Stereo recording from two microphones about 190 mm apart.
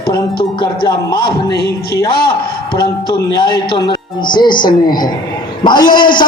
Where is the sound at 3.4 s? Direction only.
25° left (ahead or behind).